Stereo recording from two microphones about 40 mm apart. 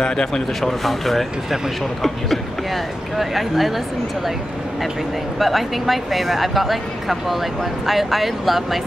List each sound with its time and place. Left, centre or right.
0.0 s speech: centre
0.6 s speech: centre
5.4 s speech: centre